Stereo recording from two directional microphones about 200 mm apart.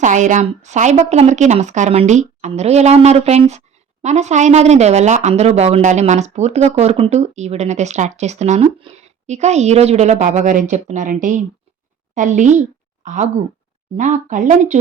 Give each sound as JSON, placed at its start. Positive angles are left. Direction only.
{"t": 0.0, "sound": "speech", "side_deg": -40}